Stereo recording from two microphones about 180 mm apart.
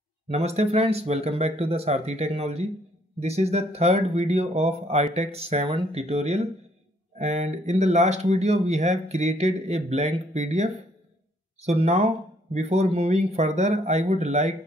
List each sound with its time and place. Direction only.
0.3 s speech: 35° right (ahead or behind)